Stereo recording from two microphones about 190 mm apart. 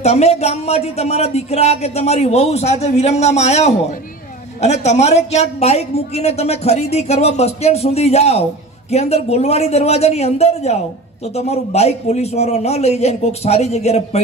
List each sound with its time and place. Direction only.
0.0 s a woman's voice: 35° left (ahead or behind)